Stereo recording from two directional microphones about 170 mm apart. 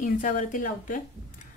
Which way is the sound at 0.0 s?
50° left (ahead or behind).